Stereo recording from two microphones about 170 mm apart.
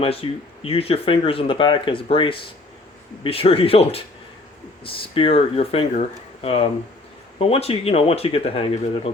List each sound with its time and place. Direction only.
0.0 s speech: 35° left (ahead or behind)